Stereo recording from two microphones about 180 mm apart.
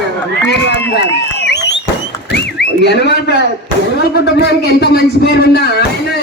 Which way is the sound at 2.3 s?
70° left (ahead or behind).